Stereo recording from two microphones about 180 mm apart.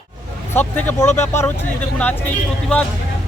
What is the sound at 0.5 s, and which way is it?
Speech, 10° left (ahead or behind).